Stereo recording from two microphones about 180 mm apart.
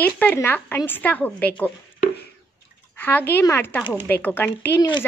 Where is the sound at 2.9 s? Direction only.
10° left (ahead or behind).